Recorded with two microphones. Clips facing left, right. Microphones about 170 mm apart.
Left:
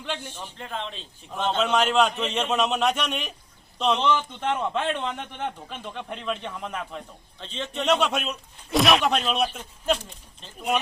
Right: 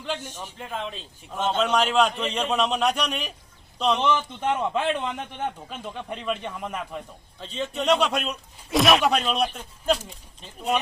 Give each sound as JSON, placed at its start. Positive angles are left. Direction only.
{"t": 0.3, "sound": "a man's voice", "side_deg": -10}
{"t": 1.7, "sound": "a man's voice", "side_deg": 0}